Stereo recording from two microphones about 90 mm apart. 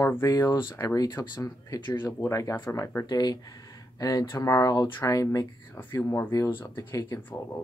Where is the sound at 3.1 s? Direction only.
50° left (ahead or behind); by 7.6 s 35° left (ahead or behind).